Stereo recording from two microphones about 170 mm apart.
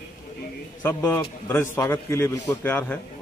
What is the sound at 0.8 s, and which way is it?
A man's voice, 15° left (ahead or behind).